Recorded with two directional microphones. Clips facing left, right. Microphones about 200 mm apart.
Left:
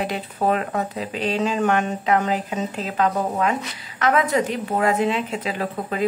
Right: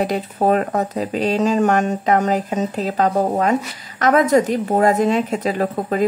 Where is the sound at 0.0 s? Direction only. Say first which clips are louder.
Right 5 dB; 40° right (ahead or behind).